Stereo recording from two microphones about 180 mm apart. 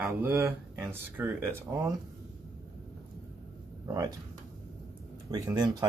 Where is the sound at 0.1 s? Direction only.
10° right (ahead or behind).